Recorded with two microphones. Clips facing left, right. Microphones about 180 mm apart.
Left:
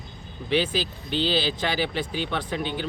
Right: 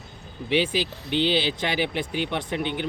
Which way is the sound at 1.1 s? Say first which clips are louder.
Right 2 dB; 20° right (ahead or behind).